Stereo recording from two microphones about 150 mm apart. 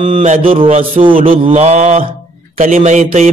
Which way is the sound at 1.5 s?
50° right (ahead or behind).